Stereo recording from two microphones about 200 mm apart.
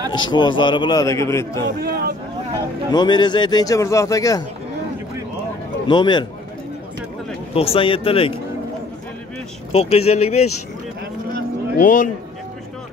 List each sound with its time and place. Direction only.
0.1 s a man's voice: 20° left (ahead or behind)
1.8 s speech: 50° right (ahead or behind)
2.9 s a man's voice: 20° left (ahead or behind)
5.9 s a man's voice: 20° left (ahead or behind)
7.5 s a man's voice: 30° left (ahead or behind)
9.7 s speech: 30° left (ahead or behind)
11.8 s speech: 40° left (ahead or behind)